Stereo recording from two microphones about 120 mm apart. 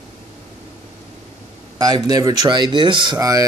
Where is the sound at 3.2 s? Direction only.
30° right (ahead or behind).